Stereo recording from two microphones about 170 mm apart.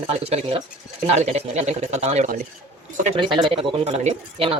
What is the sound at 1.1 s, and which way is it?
Speech, 40° right (ahead or behind).